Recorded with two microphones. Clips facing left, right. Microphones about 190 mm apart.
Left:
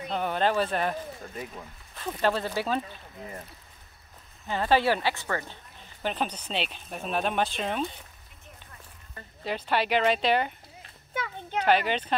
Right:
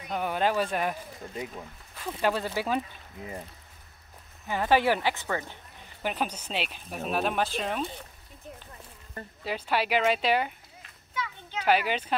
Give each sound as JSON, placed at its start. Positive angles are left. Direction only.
{"t": 0.1, "sound": "speech", "side_deg": -5}
{"t": 4.5, "sound": "speech", "side_deg": -15}
{"t": 9.4, "sound": "speech", "side_deg": -5}
{"t": 11.6, "sound": "speech", "side_deg": -5}